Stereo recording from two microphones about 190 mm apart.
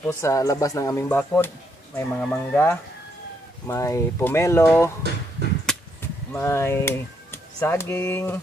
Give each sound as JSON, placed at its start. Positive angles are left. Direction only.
{"t": 0.0, "sound": "speech", "side_deg": 15}
{"t": 5.7, "sound": "chop", "side_deg": 5}
{"t": 6.3, "sound": "speech", "side_deg": 15}